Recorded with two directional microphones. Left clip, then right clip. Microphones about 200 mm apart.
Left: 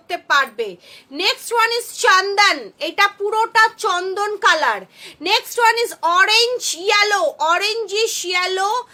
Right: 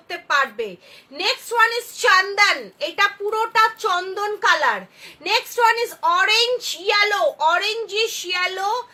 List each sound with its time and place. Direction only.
0.1 s a woman's voice: 50° left (ahead or behind)